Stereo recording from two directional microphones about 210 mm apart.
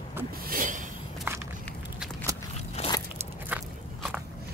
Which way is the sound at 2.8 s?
30° left (ahead or behind).